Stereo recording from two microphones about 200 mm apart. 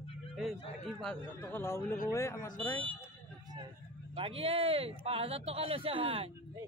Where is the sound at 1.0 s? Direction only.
10° left (ahead or behind).